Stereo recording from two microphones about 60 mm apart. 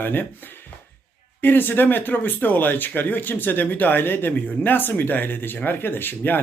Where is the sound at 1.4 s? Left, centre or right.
Left.